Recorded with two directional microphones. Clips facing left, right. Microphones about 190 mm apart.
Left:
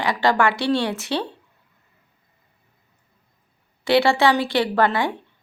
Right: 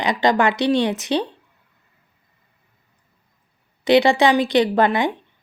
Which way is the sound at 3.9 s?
20° right (ahead or behind).